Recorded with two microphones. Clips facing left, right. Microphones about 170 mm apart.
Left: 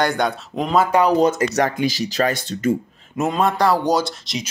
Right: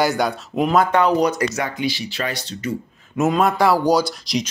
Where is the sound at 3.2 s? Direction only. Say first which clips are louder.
Right 1 dB; centre (ahead or behind).